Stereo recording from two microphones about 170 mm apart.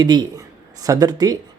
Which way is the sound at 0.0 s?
25° right (ahead or behind).